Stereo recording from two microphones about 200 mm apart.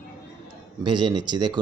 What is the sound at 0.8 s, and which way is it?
Speech, 20° right (ahead or behind).